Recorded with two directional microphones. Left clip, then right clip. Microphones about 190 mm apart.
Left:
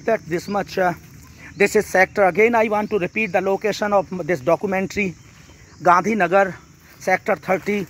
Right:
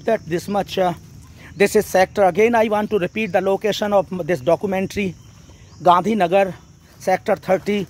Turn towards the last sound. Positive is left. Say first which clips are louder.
# right 2 dB
turn(degrees=-5)  # may be behind; listen again after turning